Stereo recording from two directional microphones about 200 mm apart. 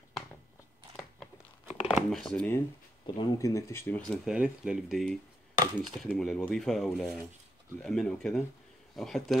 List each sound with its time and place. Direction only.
1.9 s speech: centre (ahead or behind)
5.6 s speech: 20° right (ahead or behind)
5.9 s speech: 5° left (ahead or behind)